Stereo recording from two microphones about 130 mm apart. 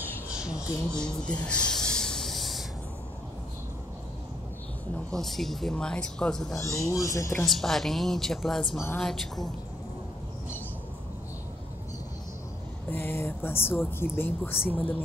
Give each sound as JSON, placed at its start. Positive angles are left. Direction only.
{"t": 0.3, "sound": "a sound", "side_deg": -5}
{"t": 0.9, "sound": "snake", "side_deg": 5}
{"t": 5.1, "sound": "speech", "side_deg": 0}
{"t": 6.6, "sound": "speech", "side_deg": 25}
{"t": 7.4, "sound": "speech", "side_deg": 0}
{"t": 8.7, "sound": "speech", "side_deg": 20}
{"t": 9.0, "sound": "speech", "side_deg": 0}
{"t": 12.9, "sound": "speech", "side_deg": 15}